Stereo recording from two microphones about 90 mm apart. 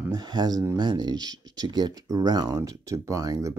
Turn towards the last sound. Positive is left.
turn(degrees=-40)  # may be behind; listen again after turning